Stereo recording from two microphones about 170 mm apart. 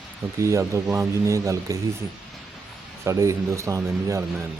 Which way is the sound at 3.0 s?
15° right (ahead or behind).